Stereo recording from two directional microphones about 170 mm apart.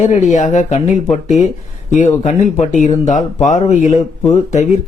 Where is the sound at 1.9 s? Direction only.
45° left (ahead or behind).